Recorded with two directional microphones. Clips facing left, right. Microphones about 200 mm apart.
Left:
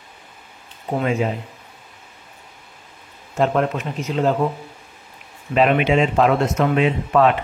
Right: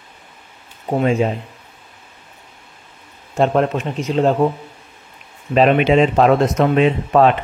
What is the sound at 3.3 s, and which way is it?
Speech, 30° right (ahead or behind).